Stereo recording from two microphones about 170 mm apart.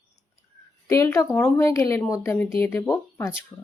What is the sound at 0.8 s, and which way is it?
Speech, 15° left (ahead or behind).